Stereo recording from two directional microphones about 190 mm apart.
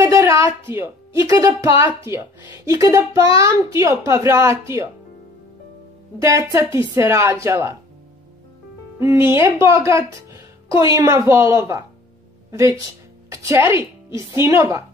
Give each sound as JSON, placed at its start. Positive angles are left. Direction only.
{"t": 0.0, "sound": "speech", "side_deg": -15}
{"t": 6.2, "sound": "speech", "side_deg": -15}
{"t": 9.0, "sound": "speech", "side_deg": -15}